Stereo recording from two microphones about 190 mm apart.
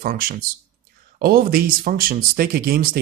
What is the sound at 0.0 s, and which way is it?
Speech, 50° right (ahead or behind).